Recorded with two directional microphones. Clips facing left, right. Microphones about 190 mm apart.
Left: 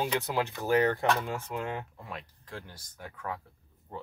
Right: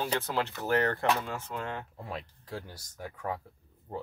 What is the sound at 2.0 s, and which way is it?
Speech, 35° right (ahead or behind).